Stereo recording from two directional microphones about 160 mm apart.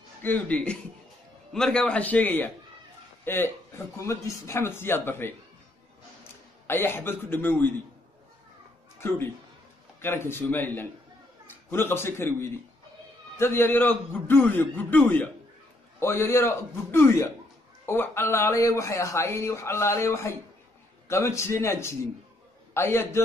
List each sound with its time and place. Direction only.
0.2 s speech: 10° left (ahead or behind)
6.7 s speech: 15° left (ahead or behind)
9.9 s a man's voice: 15° left (ahead or behind)